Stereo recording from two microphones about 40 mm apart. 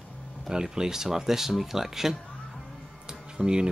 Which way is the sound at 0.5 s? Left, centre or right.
Centre.